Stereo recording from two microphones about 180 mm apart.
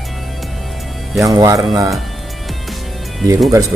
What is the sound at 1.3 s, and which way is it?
Speech, 20° right (ahead or behind).